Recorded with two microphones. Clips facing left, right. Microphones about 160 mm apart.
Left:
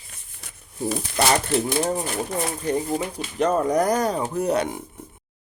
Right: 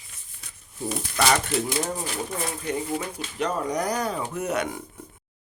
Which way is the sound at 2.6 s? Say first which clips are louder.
Left 4 dB; 35° left (ahead or behind).